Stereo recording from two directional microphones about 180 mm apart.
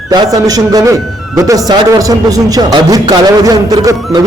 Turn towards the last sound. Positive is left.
turn(degrees=-20)  # may be behind; listen again after turning